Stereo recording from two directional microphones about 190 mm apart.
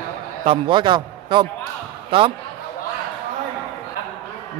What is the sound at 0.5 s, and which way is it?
A man's voice, 25° right (ahead or behind).